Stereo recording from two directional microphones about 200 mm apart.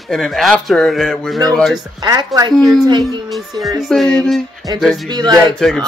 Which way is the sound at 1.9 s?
20° right (ahead or behind).